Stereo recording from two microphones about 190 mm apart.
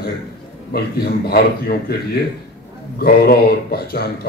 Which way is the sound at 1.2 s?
55° left (ahead or behind).